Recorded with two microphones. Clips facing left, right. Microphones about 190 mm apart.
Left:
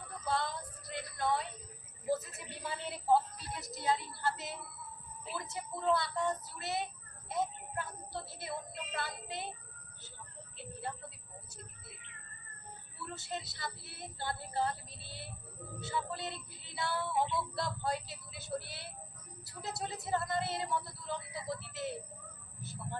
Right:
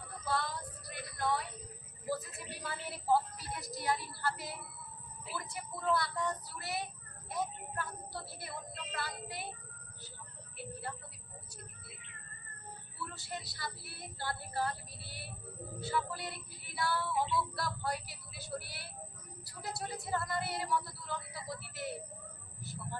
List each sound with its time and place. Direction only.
0.3 s child singing: 25° left (ahead or behind)
2.0 s speech: 20° left (ahead or behind)
5.3 s music: 20° left (ahead or behind)
10.6 s speech: 20° left (ahead or behind)
13.1 s music: 25° left (ahead or behind)